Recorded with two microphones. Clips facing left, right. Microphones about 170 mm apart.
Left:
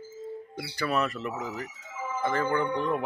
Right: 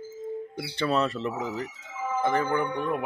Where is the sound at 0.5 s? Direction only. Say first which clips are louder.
Right 2 dB; 25° right (ahead or behind).